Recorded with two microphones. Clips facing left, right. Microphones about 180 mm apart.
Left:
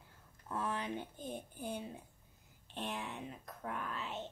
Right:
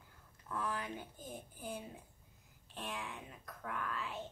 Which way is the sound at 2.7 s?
25° left (ahead or behind).